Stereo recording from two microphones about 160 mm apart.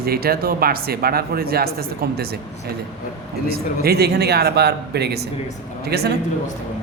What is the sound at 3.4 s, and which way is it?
A man's voice, 80° right.